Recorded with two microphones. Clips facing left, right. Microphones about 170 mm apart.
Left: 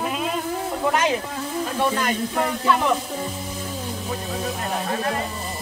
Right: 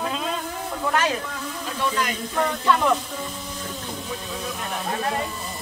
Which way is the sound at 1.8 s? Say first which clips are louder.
Left 2 dB; 50° left (ahead or behind).